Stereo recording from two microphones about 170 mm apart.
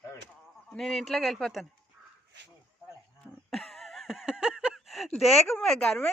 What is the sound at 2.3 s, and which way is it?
Speech, 90° right.